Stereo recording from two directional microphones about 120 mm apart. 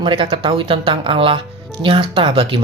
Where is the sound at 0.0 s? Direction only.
45° right (ahead or behind).